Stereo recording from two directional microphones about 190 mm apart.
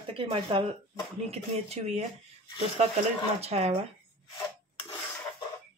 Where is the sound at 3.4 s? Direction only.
35° right (ahead or behind).